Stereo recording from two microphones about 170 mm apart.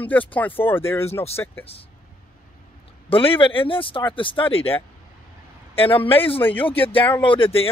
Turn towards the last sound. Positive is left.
turn(degrees=30)  # may be behind; listen again after turning